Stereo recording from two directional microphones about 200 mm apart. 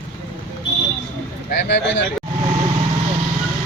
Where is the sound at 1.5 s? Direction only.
60° left (ahead or behind).